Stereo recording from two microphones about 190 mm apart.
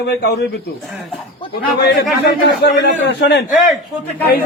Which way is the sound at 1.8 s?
60° left (ahead or behind).